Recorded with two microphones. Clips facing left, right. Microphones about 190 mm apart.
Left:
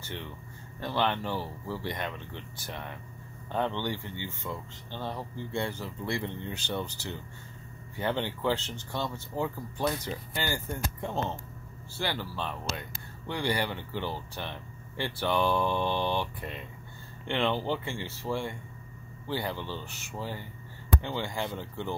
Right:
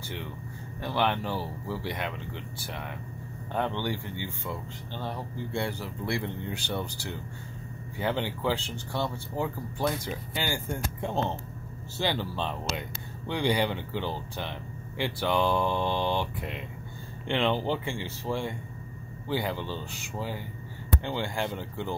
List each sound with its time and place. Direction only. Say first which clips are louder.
0.7 s speech: right 1 dB; 15° right (ahead or behind)
8.0 s speech: right 1 dB; 10° right (ahead or behind)